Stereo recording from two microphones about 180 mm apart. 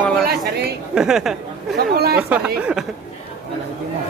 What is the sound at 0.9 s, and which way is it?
Speech, 5° right (ahead or behind).